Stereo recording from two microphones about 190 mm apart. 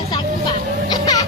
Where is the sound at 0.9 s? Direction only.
20° left (ahead or behind).